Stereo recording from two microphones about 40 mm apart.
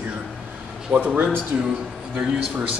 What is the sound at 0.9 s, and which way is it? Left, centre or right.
Speech, right.